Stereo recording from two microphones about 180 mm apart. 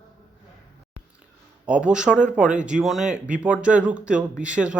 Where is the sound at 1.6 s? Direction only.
5° right (ahead or behind).